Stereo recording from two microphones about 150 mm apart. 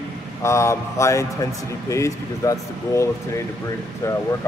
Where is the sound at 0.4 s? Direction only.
20° left (ahead or behind).